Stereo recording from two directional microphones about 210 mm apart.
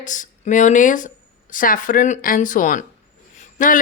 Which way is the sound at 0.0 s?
35° left (ahead or behind).